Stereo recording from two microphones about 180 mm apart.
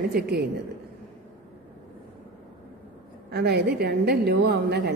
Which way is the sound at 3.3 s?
65° right (ahead or behind).